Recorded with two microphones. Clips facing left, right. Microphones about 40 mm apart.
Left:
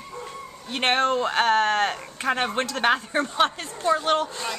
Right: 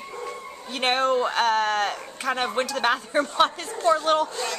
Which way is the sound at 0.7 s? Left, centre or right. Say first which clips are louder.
Even; left.